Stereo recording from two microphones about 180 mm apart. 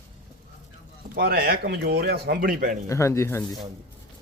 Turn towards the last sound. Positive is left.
turn(degrees=15)  # may be behind; listen again after turning